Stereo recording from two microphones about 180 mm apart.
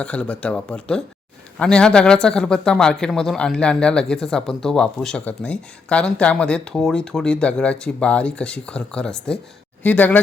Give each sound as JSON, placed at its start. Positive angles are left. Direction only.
{"t": 0.0, "sound": "speech", "side_deg": 5}